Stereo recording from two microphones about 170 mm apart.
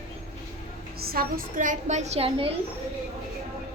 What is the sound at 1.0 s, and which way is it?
A woman's voice, 60° right (ahead or behind).